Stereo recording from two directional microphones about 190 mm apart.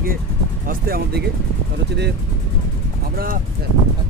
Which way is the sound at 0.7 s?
50° right (ahead or behind).